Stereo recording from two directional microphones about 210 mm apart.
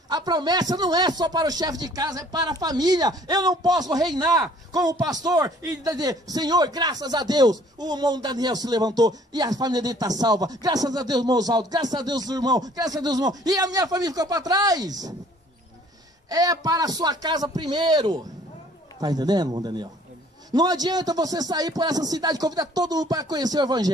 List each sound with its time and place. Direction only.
0.1 s a man's voice: 20° right (ahead or behind)
16.3 s a man's voice: 15° right (ahead or behind)